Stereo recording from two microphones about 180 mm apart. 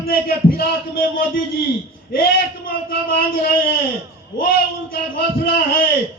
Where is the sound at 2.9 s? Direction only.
55° left (ahead or behind).